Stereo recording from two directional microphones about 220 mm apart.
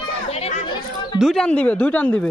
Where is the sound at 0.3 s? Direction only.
30° left (ahead or behind).